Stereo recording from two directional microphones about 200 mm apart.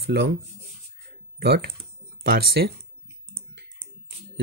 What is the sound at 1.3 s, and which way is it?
Speech, 50° right (ahead or behind).